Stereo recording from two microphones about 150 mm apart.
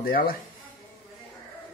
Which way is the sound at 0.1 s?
80° left.